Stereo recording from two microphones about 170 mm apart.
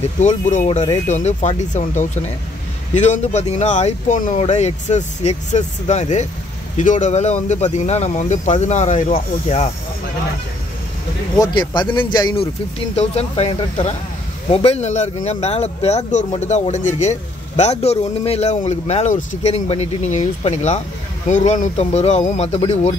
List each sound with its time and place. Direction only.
0.2 s a man's voice: 45° left (ahead or behind)
11.3 s speech: 20° left (ahead or behind)
12.9 s a man's voice: 40° left (ahead or behind)